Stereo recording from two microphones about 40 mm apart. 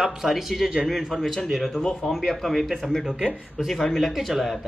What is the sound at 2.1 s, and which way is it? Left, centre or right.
Speech, centre.